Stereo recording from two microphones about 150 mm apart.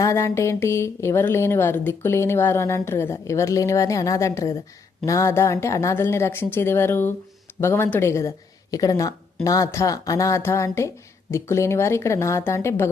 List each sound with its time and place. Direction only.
0.0 s a woman's voice: 20° left (ahead or behind)